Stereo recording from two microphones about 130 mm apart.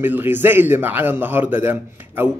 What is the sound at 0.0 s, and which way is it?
Speech, 15° right (ahead or behind).